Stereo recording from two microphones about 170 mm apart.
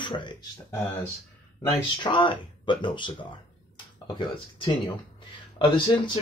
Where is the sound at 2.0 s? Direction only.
30° left (ahead or behind).